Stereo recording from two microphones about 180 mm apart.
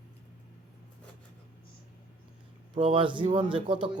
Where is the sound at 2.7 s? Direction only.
30° right (ahead or behind).